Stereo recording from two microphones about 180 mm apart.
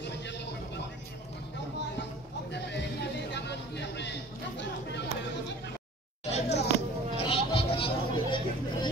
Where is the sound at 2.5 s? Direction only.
75° left (ahead or behind).